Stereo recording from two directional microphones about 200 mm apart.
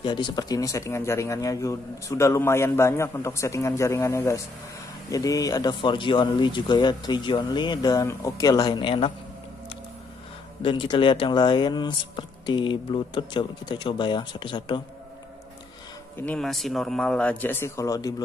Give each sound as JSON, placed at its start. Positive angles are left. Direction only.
{"t": 0.0, "sound": "speech", "side_deg": 25}
{"t": 10.6, "sound": "speech", "side_deg": 25}
{"t": 16.2, "sound": "speech", "side_deg": 5}